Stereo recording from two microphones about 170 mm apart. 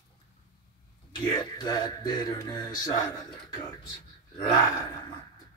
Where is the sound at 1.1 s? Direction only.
25° left (ahead or behind).